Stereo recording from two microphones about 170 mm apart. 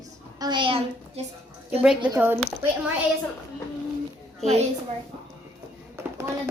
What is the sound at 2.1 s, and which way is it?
Speech, 10° right (ahead or behind).